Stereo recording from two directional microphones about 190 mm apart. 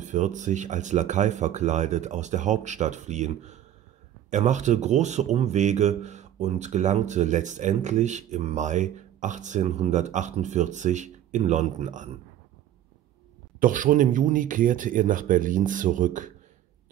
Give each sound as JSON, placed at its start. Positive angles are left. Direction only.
{"t": 0.0, "sound": "speech", "side_deg": -40}
{"t": 13.6, "sound": "speech", "side_deg": -45}